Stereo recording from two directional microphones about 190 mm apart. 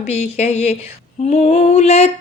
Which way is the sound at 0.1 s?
35° left (ahead or behind).